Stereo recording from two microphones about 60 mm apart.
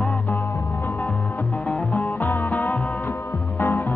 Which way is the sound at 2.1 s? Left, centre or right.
Left.